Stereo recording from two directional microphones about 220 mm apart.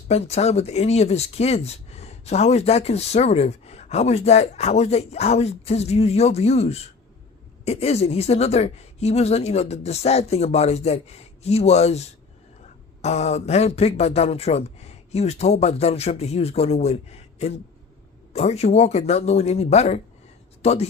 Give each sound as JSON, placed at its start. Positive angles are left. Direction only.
{"t": 0.1, "sound": "speech", "side_deg": 30}